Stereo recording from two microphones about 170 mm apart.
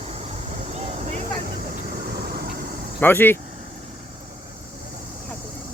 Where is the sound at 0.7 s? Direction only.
40° right (ahead or behind).